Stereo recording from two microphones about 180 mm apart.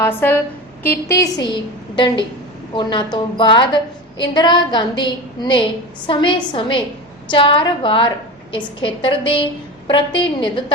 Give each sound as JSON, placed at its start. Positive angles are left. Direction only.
{"t": 0.0, "sound": "a woman's voice", "side_deg": 10}